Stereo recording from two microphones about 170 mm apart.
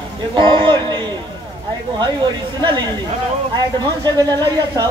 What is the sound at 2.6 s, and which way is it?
Speech, 25° right (ahead or behind).